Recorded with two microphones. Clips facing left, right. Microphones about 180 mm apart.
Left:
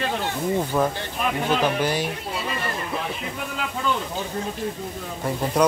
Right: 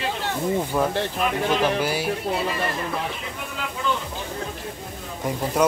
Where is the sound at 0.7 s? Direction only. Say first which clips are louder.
Right 1 dB; 10° right (ahead or behind).